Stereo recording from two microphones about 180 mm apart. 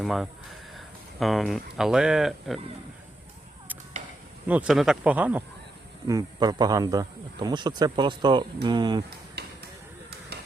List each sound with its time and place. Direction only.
0.0 s speech: centre (ahead or behind)
4.4 s speech: 5° right (ahead or behind)
6.1 s a man's voice: 20° right (ahead or behind)
9.4 s a sound: 65° right (ahead or behind)